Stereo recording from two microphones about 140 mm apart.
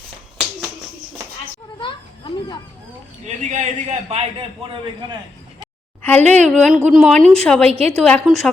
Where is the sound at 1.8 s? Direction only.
35° left (ahead or behind).